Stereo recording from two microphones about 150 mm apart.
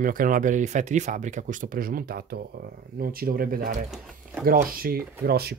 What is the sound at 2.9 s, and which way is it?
Speech, 75° right (ahead or behind).